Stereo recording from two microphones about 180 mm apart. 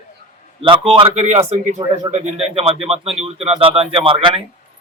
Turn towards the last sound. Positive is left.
turn(degrees=-30)  # may be behind; listen again after turning